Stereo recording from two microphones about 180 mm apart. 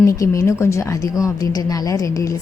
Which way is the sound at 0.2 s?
15° left (ahead or behind).